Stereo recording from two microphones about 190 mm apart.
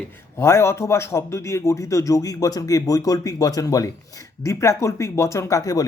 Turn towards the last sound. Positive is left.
turn(degrees=15)  # may be behind; listen again after turning